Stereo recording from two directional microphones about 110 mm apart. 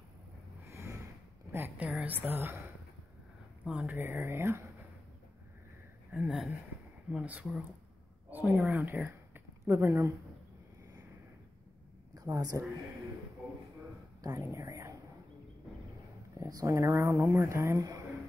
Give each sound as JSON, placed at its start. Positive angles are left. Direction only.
{"t": 0.7, "sound": "a sound", "side_deg": -25}
{"t": 1.5, "sound": "a woman's voice", "side_deg": -20}
{"t": 3.6, "sound": "speech", "side_deg": -10}
{"t": 6.1, "sound": "a woman's voice", "side_deg": -5}
{"t": 12.1, "sound": "a woman's voice", "side_deg": -35}
{"t": 14.2, "sound": "speech", "side_deg": -25}
{"t": 16.3, "sound": "speech", "side_deg": -30}